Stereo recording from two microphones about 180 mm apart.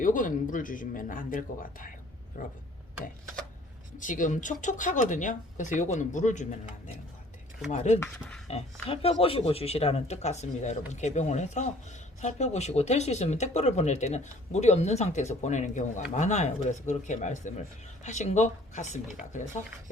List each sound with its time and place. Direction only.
0.0 s speech: 45° left (ahead or behind)
3.9 s speech: 45° left (ahead or behind)
7.7 s speech: 40° left (ahead or behind)
7.9 s speech: 10° left (ahead or behind)
8.4 s speech: 35° left (ahead or behind)